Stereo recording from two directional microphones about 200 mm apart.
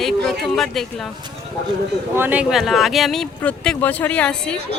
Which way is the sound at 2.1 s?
10° right (ahead or behind).